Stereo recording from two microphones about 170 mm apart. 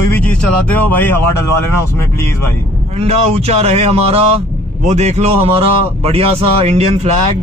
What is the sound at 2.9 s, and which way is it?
Speech, 35° right (ahead or behind).